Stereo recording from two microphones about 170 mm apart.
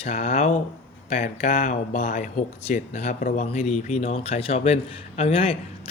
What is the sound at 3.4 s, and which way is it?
A man's voice, 40° left (ahead or behind).